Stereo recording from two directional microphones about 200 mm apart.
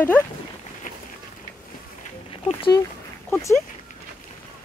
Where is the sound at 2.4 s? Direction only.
25° left (ahead or behind).